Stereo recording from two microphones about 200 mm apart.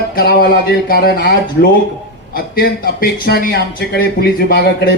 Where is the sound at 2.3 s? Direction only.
50° left (ahead or behind).